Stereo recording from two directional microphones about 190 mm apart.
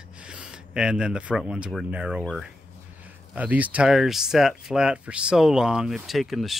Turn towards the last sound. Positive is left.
turn(degrees=0)  # may be behind; listen again after turning